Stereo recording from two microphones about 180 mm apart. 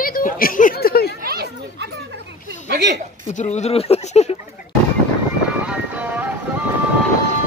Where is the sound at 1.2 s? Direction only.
60° right (ahead or behind).